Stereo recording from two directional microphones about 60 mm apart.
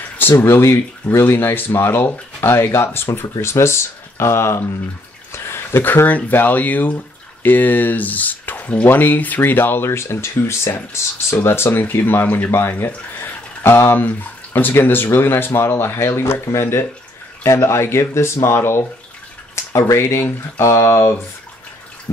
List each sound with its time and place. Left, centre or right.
0.2 s speech: left